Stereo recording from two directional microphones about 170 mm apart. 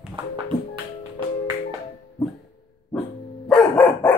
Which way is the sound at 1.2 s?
30° right (ahead or behind).